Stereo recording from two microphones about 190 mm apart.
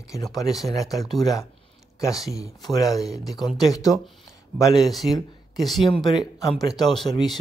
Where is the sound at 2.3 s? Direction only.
20° left (ahead or behind).